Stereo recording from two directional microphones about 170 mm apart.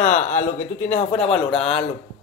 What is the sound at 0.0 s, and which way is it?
A man's voice, 45° left (ahead or behind).